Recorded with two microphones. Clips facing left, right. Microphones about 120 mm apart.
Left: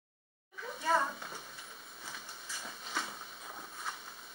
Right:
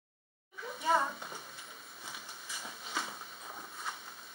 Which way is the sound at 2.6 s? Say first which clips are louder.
Even; 5° right (ahead or behind).